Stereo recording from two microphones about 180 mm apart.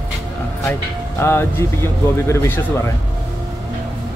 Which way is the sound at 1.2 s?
15° left (ahead or behind).